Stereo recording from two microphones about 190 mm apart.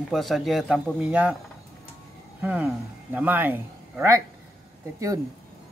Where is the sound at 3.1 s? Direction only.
10° right (ahead or behind).